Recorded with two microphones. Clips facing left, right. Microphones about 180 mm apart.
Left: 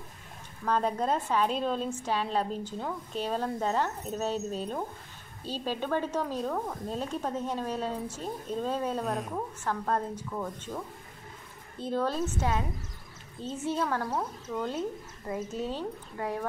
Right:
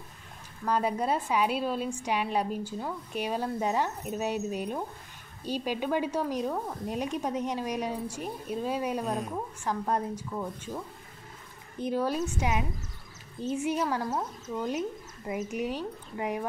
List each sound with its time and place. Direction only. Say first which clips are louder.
0.7 s speech: even; 10° right (ahead or behind)
9.7 s speech: right 1 dB; 10° right (ahead or behind)
11.8 s speech: right 1 dB; 10° right (ahead or behind)